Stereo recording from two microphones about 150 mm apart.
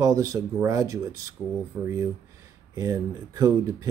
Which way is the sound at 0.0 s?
25° right (ahead or behind).